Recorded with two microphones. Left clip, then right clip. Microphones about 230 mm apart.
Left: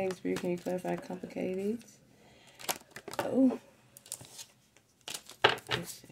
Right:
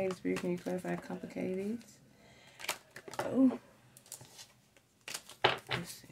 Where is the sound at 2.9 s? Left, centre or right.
Left.